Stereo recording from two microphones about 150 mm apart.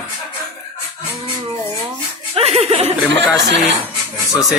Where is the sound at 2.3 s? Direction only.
40° right (ahead or behind).